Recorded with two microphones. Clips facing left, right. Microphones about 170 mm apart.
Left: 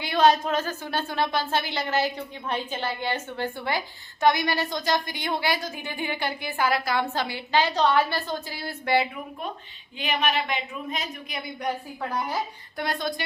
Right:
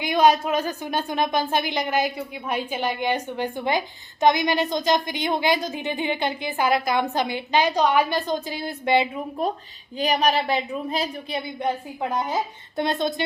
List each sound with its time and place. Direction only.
0.0 s a woman's voice: 15° right (ahead or behind)
10.0 s a woman's voice: 40° right (ahead or behind); by 13.2 s 20° right (ahead or behind)